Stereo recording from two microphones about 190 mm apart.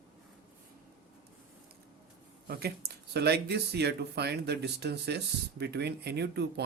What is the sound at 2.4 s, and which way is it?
Speech, 55° right (ahead or behind).